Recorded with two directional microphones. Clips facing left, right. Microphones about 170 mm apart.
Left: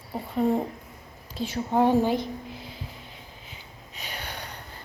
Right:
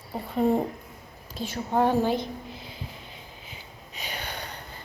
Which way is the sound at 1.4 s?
20° left (ahead or behind).